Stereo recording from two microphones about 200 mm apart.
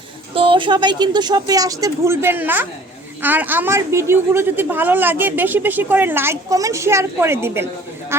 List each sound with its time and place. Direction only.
0.3 s a woman's voice: 25° right (ahead or behind)